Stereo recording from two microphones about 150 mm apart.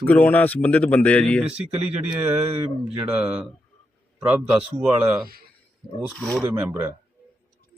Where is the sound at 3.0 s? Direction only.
10° right (ahead or behind).